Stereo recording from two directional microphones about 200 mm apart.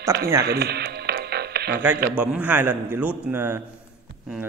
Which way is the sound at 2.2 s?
5° right (ahead or behind).